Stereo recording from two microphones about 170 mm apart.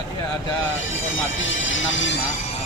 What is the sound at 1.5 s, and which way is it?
Speech, 90° left.